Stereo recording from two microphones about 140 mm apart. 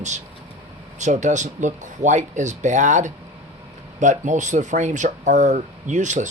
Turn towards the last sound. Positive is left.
turn(degrees=-60)  # may be behind; listen again after turning